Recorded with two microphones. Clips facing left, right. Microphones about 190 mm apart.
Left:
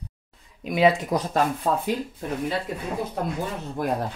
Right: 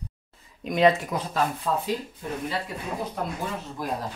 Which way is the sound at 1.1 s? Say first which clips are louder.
Left 5 dB; 35° left (ahead or behind).